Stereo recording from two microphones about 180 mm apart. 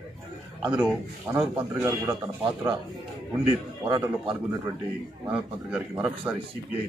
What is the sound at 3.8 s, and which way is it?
Speech, 15° right (ahead or behind).